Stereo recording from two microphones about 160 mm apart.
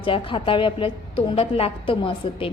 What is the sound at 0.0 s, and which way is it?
A woman's voice, 35° left (ahead or behind).